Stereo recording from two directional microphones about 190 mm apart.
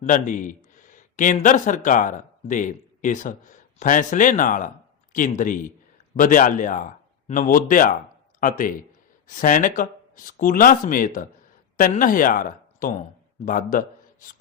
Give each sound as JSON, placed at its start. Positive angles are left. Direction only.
{"t": 0.0, "sound": "speech", "side_deg": 45}